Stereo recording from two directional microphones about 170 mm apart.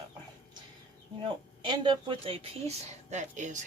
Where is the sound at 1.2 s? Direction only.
30° right (ahead or behind).